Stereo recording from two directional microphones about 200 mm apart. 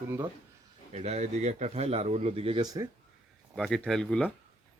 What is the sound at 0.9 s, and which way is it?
Speech, 35° right (ahead or behind).